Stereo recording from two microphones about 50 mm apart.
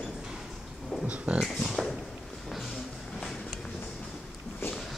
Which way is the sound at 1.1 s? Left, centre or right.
Right.